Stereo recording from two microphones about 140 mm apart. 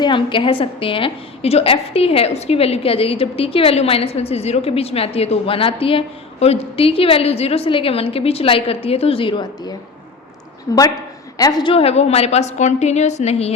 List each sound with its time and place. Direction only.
0.0 s a woman's voice: 35° left (ahead or behind)
11.7 s a woman's voice: 45° left (ahead or behind)